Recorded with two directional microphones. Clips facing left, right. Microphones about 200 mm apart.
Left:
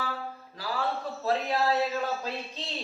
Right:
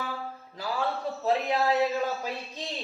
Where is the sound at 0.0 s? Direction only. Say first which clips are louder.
Even; 15° right (ahead or behind).